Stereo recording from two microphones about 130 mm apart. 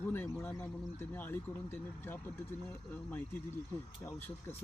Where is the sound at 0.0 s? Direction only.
15° left (ahead or behind).